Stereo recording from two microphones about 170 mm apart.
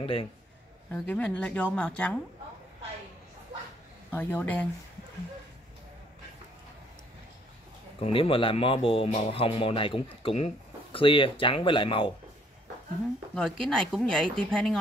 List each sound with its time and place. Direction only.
0.0 s speech: 30° left (ahead or behind)
0.9 s speech: 5° left (ahead or behind)
4.1 s speech: 10° left (ahead or behind)
8.0 s speech: 30° left (ahead or behind)
13.3 s speech: 5° left (ahead or behind)